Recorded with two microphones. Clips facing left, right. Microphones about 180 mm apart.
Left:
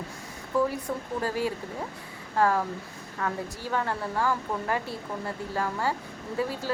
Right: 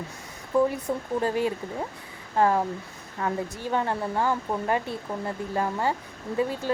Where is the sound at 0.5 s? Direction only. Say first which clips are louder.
Right 3 dB; 20° right (ahead or behind).